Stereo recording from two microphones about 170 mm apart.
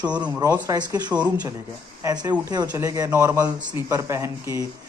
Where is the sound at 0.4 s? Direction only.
20° right (ahead or behind).